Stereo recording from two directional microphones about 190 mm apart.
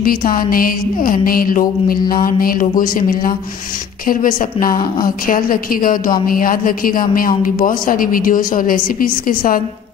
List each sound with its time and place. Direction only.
0.0 s music: 50° left (ahead or behind)